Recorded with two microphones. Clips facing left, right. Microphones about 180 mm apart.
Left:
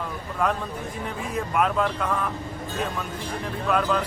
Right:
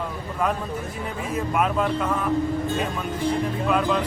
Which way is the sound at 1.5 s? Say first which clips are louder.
Even; 5° right (ahead or behind).